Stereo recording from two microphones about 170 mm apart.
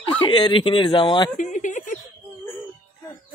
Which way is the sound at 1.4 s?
45° left (ahead or behind).